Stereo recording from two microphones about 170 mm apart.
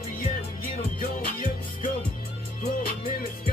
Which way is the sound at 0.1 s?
50° left (ahead or behind).